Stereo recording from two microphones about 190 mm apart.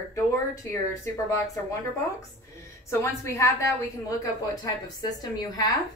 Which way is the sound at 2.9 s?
15° left (ahead or behind).